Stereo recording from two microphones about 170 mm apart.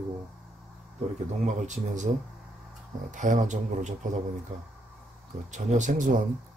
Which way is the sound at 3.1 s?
45° right (ahead or behind).